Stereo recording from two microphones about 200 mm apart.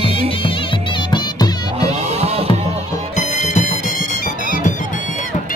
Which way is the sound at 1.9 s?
30° right (ahead or behind).